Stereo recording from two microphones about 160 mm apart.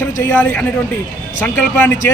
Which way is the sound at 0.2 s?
10° left (ahead or behind).